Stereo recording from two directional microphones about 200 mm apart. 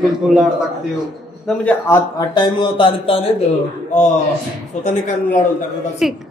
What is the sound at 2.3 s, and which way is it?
A man's voice, 25° left (ahead or behind).